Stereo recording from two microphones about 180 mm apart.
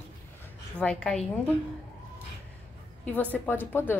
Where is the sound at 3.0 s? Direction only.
10° left (ahead or behind).